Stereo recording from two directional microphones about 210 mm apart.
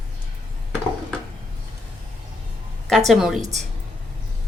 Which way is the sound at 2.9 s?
Centre (ahead or behind).